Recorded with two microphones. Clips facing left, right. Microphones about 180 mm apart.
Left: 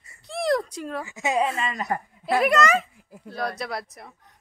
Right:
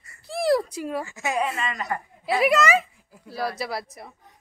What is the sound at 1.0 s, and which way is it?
Speech, 20° left (ahead or behind).